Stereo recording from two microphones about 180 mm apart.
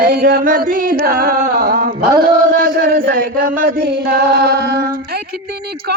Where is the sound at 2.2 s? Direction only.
55° right (ahead or behind).